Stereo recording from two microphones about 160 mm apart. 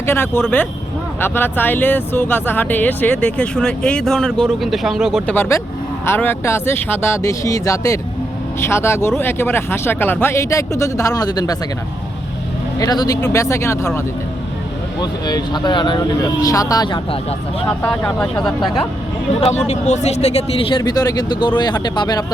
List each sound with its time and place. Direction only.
0.0 s speech: 15° left (ahead or behind)
5.3 s speech: 15° left (ahead or behind)
12.8 s speech: 25° left (ahead or behind)
15.0 s speech: 25° left (ahead or behind)
17.7 s speech: 5° left (ahead or behind)
19.5 s speech: 45° left (ahead or behind); by 22.2 s 25° left (ahead or behind)